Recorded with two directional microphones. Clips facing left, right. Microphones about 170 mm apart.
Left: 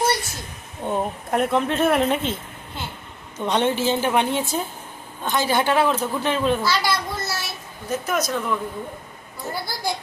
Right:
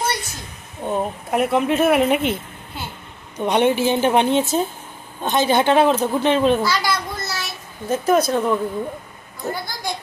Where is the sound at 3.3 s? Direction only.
15° right (ahead or behind).